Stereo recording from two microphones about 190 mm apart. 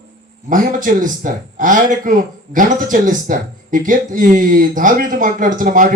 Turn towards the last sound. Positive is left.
turn(degrees=-45)  # may be behind; listen again after turning